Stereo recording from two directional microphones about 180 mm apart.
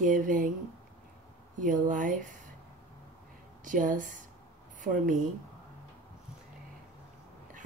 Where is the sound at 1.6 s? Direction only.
45° right (ahead or behind).